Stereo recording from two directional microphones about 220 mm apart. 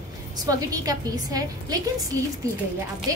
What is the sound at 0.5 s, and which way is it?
A woman's voice, 15° right (ahead or behind).